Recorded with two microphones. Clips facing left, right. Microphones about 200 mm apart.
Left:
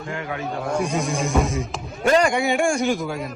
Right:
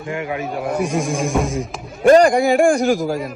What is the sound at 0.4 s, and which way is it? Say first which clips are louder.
A man's voice: right 1 dB; 5° right (ahead or behind).